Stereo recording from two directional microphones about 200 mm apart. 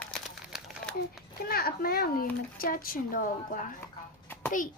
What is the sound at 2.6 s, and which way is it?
A woman's voice, 45° left (ahead or behind).